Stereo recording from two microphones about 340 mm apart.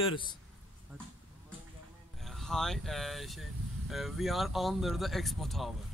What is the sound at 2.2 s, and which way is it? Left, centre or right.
Speech, centre.